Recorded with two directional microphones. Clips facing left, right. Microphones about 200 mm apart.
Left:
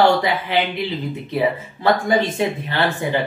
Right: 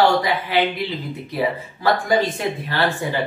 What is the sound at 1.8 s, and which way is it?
Speech, 25° left (ahead or behind).